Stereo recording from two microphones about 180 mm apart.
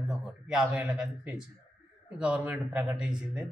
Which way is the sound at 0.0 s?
5° right (ahead or behind).